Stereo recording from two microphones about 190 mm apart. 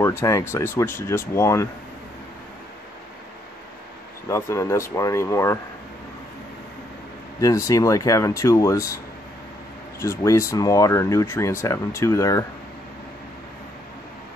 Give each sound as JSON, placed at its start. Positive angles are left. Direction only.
{"t": 0.0, "sound": "speech", "side_deg": 15}
{"t": 4.3, "sound": "speech", "side_deg": 15}
{"t": 7.3, "sound": "speech", "side_deg": 15}